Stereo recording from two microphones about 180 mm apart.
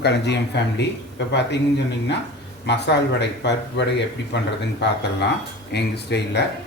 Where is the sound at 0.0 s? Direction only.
70° left (ahead or behind).